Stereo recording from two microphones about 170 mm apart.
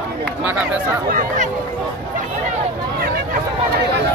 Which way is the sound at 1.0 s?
50° right (ahead or behind).